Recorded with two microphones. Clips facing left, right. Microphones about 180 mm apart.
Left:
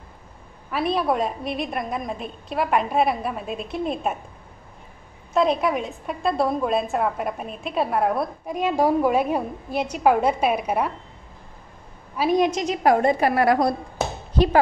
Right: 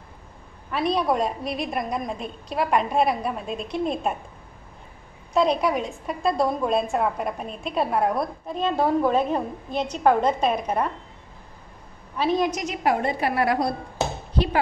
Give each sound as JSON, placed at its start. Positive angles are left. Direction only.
{"t": 0.7, "sound": "a woman's voice", "side_deg": 5}
{"t": 5.3, "sound": "a woman's voice", "side_deg": 0}
{"t": 8.5, "sound": "a woman's voice", "side_deg": 10}
{"t": 12.2, "sound": "a woman's voice", "side_deg": 10}
{"t": 12.4, "sound": "a woman's voice", "side_deg": 30}
{"t": 12.8, "sound": "a woman's voice", "side_deg": 45}